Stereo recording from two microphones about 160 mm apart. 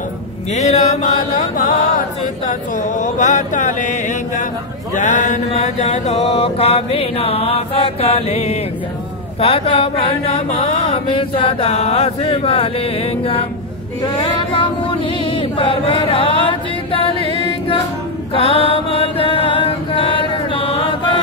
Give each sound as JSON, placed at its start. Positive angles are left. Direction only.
{"t": 0.5, "sound": "a sound", "side_deg": 45}
{"t": 1.3, "sound": "chant", "side_deg": 55}
{"t": 2.9, "sound": "a sound", "side_deg": 50}
{"t": 4.9, "sound": "mantra", "side_deg": 50}
{"t": 14.1, "sound": "chant", "side_deg": 30}
{"t": 18.3, "sound": "mantra", "side_deg": 35}